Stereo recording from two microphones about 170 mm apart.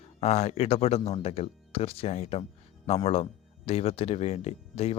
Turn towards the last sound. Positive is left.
turn(degrees=35)  # may be behind; listen again after turning